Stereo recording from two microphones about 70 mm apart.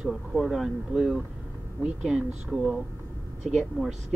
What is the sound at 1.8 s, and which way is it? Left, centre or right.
Speech, centre.